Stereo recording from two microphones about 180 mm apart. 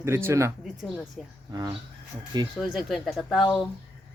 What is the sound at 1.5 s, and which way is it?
Speech, 20° right (ahead or behind).